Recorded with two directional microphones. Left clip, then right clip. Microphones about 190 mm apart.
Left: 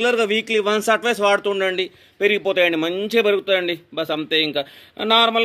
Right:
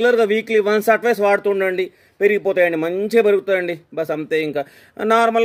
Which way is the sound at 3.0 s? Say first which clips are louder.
Right 5 dB; 35° right (ahead or behind).